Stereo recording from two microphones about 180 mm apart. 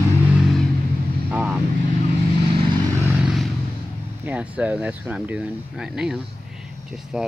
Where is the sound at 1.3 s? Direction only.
5° right (ahead or behind).